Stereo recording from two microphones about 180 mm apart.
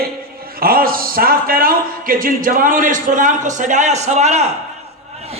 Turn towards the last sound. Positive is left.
turn(degrees=-40)  # may be behind; listen again after turning